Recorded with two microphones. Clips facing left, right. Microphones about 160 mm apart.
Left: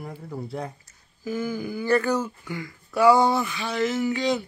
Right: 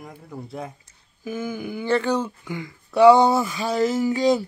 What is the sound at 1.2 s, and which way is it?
Speech, 15° right (ahead or behind).